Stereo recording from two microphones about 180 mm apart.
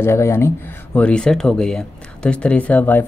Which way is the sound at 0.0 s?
15° left (ahead or behind).